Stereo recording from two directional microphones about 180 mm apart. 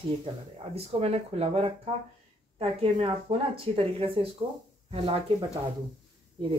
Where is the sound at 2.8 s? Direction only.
30° right (ahead or behind).